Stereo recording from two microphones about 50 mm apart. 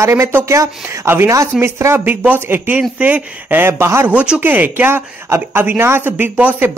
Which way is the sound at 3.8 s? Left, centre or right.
Right.